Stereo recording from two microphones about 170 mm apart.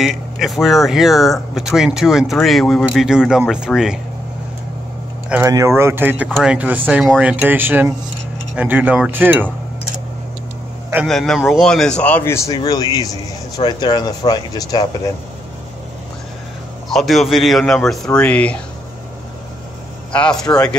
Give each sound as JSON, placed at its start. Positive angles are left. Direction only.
{"t": 0.0, "sound": "speech", "side_deg": 0}
{"t": 5.5, "sound": "speech", "side_deg": -15}
{"t": 11.1, "sound": "speech", "side_deg": 5}
{"t": 16.9, "sound": "speech", "side_deg": 0}
{"t": 20.1, "sound": "a man's voice", "side_deg": 5}
{"t": 20.4, "sound": "speech", "side_deg": 20}